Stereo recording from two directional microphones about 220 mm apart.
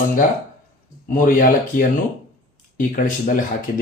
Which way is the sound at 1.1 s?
40° left (ahead or behind).